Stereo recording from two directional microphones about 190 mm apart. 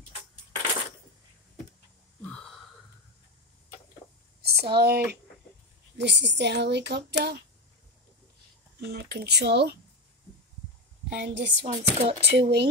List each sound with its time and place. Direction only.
4.4 s speech: 55° right (ahead or behind)
8.8 s speech: 60° right (ahead or behind)
11.1 s a woman's voice: 70° right (ahead or behind)
11.6 s speech: 35° right (ahead or behind)
12.2 s speech: 60° right (ahead or behind)